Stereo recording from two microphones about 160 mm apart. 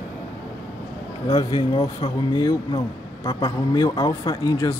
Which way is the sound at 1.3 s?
35° left (ahead or behind).